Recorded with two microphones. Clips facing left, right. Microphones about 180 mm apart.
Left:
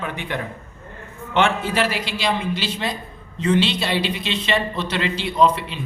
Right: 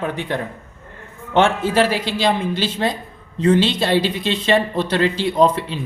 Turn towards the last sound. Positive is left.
turn(degrees=-45)  # may be behind; listen again after turning